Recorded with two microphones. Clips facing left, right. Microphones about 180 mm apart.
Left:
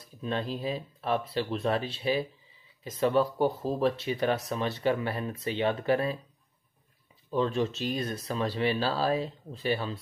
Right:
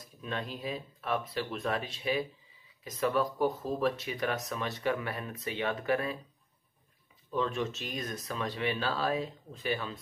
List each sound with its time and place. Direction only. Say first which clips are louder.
0.2 s speech: left 5 dB; 30° left (ahead or behind)
7.2 s speech: left 4 dB; 30° left (ahead or behind)